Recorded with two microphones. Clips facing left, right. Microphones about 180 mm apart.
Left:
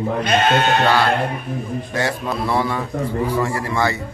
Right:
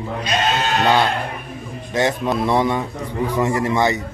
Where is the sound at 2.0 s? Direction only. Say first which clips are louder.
Right 5 dB; 20° right (ahead or behind).